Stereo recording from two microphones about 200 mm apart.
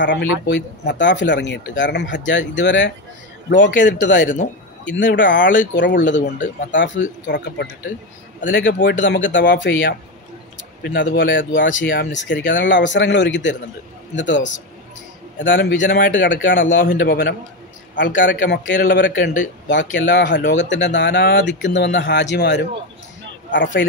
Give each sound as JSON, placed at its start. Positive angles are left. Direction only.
{"t": 0.0, "sound": "speech", "side_deg": 65}
{"t": 10.8, "sound": "speech", "side_deg": 65}
{"t": 11.2, "sound": "speech", "side_deg": 45}
{"t": 11.6, "sound": "speech", "side_deg": 65}
{"t": 17.9, "sound": "speech", "side_deg": 65}